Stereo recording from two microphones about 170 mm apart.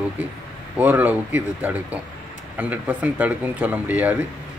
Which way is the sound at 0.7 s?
10° right (ahead or behind).